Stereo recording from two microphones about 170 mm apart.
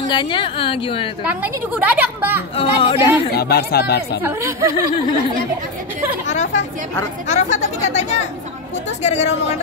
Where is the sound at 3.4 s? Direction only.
65° left (ahead or behind).